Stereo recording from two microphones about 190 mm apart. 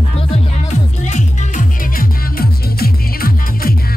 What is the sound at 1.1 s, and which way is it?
Music, 40° left (ahead or behind).